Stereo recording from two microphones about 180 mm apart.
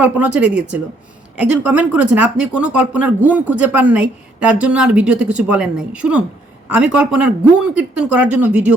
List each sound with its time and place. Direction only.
0.0 s speech: 10° right (ahead or behind)